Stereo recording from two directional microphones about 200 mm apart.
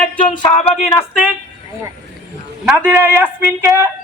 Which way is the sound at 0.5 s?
35° left (ahead or behind).